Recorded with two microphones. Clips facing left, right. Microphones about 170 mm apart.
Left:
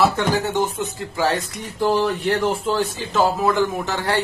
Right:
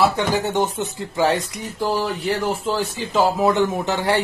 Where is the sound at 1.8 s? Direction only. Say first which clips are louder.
Left 3 dB; centre (ahead or behind).